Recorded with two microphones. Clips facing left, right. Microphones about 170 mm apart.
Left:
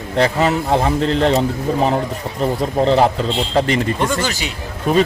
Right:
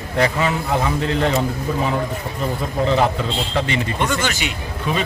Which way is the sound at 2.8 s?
35° left (ahead or behind).